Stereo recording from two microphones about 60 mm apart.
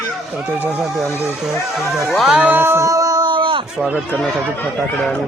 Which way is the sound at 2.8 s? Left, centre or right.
Right.